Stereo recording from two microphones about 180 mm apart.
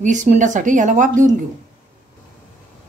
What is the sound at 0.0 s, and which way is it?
A woman's voice, 45° right (ahead or behind).